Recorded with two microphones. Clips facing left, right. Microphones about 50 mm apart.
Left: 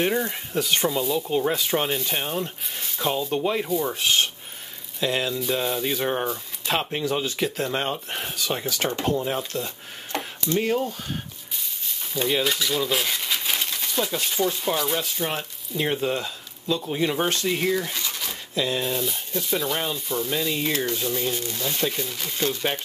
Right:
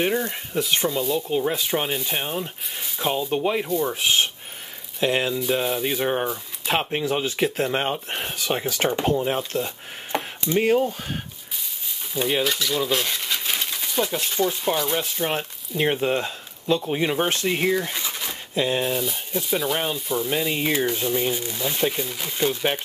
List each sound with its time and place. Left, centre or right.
0.0 s speech: centre
3.6 s speech: centre
3.9 s speech: centre
5.4 s speech: centre
9.7 s chopping: centre
10.6 s speech: right
12.1 s speech: centre; by 16.8 s right
16.8 s speech: centre
17.7 s pigeon: centre
18.9 s speech: centre
20.2 s speech: right